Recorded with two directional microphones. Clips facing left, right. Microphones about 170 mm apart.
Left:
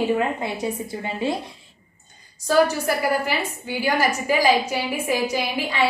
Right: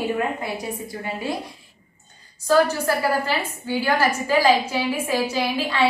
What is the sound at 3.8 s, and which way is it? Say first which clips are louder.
A woman's voice: even; 10° left (ahead or behind).